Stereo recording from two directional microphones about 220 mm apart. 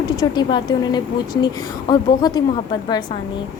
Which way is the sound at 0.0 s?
20° left (ahead or behind).